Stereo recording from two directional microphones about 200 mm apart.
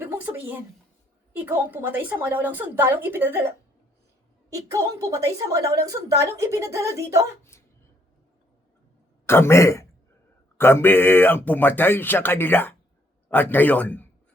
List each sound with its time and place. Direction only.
0.0 s a sound: 10° right (ahead or behind)
1.3 s a woman's voice: 10° right (ahead or behind)
9.2 s speech: 10° left (ahead or behind)